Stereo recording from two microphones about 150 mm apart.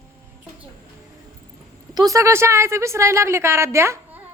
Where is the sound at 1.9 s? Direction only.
25° right (ahead or behind).